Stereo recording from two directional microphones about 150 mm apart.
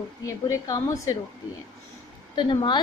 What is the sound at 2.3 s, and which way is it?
Speech, 30° left (ahead or behind).